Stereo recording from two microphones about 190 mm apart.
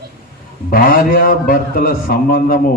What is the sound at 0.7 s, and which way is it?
A man's voice, 50° left (ahead or behind).